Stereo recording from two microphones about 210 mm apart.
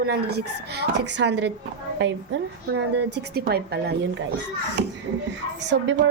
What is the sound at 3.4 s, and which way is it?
Speech, 50° right (ahead or behind).